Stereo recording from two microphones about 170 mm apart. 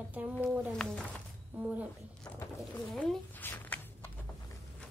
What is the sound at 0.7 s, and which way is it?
Speech, 5° left (ahead or behind).